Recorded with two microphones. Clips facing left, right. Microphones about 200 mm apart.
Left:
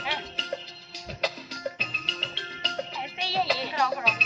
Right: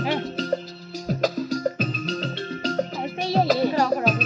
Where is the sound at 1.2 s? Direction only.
45° right (ahead or behind).